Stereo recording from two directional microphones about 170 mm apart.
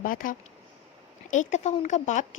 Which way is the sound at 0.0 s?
55° left (ahead or behind).